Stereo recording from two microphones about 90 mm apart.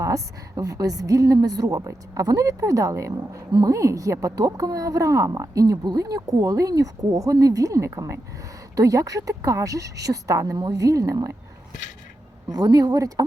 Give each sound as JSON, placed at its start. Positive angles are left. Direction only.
{"t": 0.0, "sound": "a woman's voice", "side_deg": -40}
{"t": 5.7, "sound": "a woman's voice", "side_deg": -55}
{"t": 12.5, "sound": "speech", "side_deg": -45}